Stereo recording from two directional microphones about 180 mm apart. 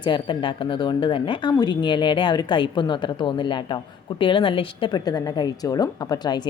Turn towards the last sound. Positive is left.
turn(degrees=20)  # may be behind; listen again after turning